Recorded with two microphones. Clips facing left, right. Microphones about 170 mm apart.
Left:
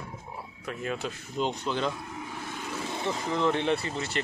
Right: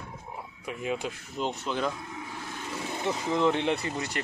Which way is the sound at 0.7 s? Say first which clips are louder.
Right 1 dB; 10° right (ahead or behind).